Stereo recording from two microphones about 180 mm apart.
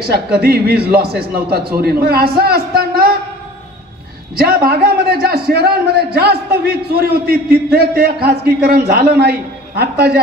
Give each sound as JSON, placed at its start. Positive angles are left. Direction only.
{"t": 0.0, "sound": "a man's voice", "side_deg": -60}
{"t": 4.4, "sound": "a man's voice", "side_deg": -55}